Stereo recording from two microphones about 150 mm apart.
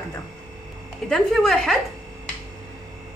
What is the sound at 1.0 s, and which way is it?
Speech, 5° left (ahead or behind).